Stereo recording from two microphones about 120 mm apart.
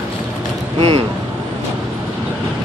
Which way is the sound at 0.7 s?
50° right (ahead or behind).